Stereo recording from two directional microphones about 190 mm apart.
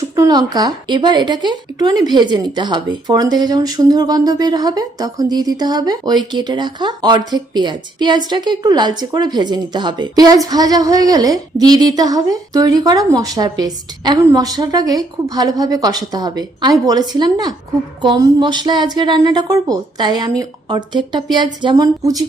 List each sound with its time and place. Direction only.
0.2 s speech: 20° right (ahead or behind)